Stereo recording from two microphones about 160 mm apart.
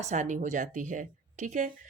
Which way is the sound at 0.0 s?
50° right (ahead or behind).